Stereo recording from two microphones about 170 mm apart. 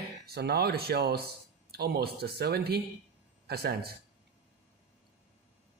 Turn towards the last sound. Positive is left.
turn(degrees=-70)  # may be behind; listen again after turning